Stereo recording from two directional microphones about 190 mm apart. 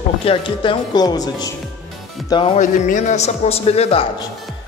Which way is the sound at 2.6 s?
40° left (ahead or behind).